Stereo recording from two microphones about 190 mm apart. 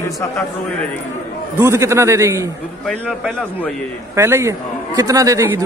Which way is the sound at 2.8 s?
5° left (ahead or behind).